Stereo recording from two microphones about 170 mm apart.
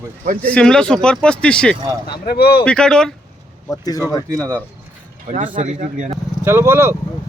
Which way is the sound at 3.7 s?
20° left (ahead or behind).